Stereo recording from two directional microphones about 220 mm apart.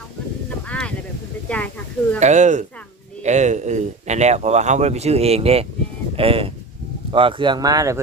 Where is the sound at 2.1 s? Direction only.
30° right (ahead or behind).